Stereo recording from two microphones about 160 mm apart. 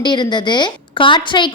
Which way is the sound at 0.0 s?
30° left (ahead or behind).